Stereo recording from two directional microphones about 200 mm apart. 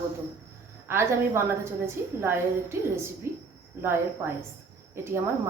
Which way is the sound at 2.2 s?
15° right (ahead or behind).